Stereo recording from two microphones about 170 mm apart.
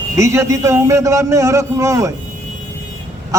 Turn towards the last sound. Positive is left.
turn(degrees=-20)  # may be behind; listen again after turning